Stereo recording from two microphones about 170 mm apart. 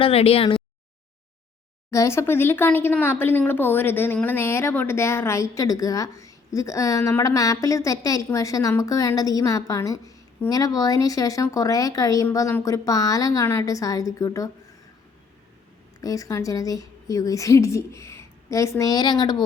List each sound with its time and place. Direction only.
0.0 s speech: 35° left (ahead or behind)
1.9 s speech: 15° left (ahead or behind)
16.0 s speech: 20° left (ahead or behind)